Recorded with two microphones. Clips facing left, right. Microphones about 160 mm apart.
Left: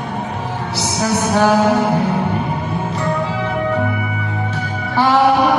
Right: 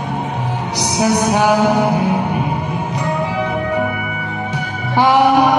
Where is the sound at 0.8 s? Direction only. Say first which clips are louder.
Right 3 dB; 15° right (ahead or behind).